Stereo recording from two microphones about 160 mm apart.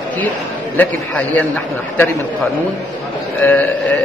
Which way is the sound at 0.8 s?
10° left (ahead or behind).